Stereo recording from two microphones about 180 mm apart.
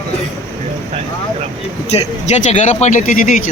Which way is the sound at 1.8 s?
35° left (ahead or behind).